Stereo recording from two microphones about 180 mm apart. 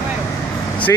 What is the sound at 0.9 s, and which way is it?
Speech, 15° left (ahead or behind).